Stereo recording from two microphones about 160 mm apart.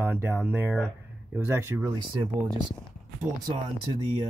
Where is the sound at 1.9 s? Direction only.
25° right (ahead or behind).